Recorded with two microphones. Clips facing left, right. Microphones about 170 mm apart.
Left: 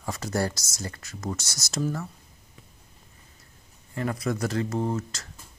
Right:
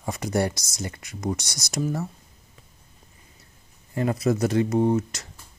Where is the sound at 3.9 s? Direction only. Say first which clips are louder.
Right 5 dB; 25° right (ahead or behind).